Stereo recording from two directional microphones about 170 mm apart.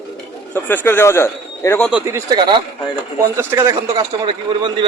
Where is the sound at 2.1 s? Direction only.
25° right (ahead or behind).